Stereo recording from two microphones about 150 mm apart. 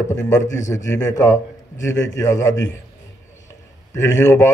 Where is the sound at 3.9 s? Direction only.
20° left (ahead or behind).